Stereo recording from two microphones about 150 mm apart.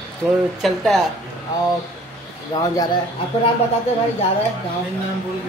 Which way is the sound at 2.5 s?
25° left (ahead or behind).